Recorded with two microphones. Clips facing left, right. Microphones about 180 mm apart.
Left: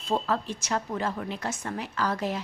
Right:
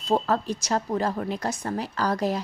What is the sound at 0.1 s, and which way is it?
A woman's voice, 40° right (ahead or behind).